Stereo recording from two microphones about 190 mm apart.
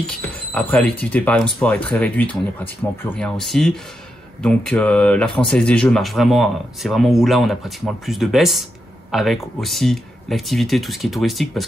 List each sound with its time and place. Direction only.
0.0 s speech: 5° left (ahead or behind)